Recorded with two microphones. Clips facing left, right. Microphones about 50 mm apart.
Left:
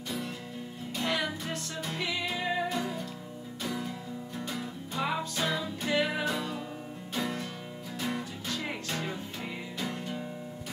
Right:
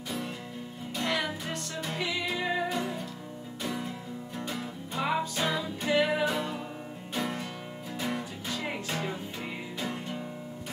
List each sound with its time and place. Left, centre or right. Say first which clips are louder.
0.9 s music: right 1 dB; centre
6.3 s music: right 2 dB; centre
9.8 s music: right 1 dB; centre